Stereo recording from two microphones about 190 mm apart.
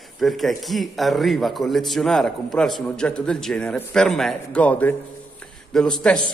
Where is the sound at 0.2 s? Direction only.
Centre (ahead or behind).